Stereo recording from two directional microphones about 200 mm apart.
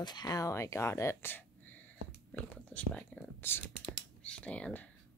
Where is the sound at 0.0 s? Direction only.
20° left (ahead or behind).